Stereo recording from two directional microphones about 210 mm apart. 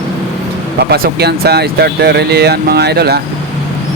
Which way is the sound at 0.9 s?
50° right (ahead or behind).